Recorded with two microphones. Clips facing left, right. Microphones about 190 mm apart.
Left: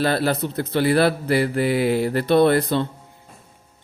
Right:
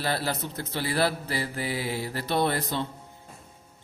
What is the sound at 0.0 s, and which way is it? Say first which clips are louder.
Speech: left 9 dB; 65° left (ahead or behind).